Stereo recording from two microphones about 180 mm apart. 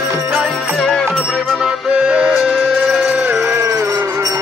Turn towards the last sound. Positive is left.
turn(degrees=-15)  # may be behind; listen again after turning